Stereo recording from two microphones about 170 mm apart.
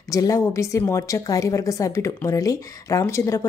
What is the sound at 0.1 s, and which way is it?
A woman's voice, 20° left (ahead or behind).